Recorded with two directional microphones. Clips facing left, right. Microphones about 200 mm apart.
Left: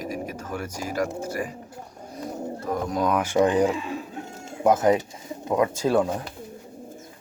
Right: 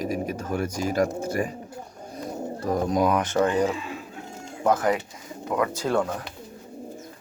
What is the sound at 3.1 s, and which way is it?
Speech, 10° left (ahead or behind).